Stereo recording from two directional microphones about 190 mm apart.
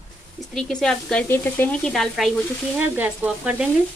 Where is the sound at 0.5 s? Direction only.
Centre (ahead or behind).